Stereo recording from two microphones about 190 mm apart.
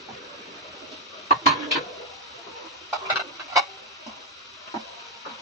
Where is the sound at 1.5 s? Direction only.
Centre (ahead or behind).